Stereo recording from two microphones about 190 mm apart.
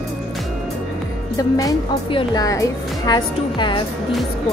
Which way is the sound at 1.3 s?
15° left (ahead or behind).